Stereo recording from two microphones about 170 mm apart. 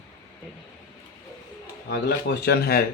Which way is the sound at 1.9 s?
70° left (ahead or behind).